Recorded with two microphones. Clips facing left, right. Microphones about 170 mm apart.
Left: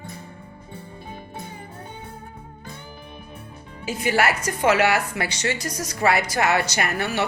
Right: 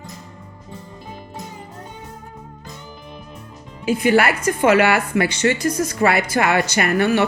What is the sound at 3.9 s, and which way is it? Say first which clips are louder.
Speech: right 6 dB; 60° right (ahead or behind).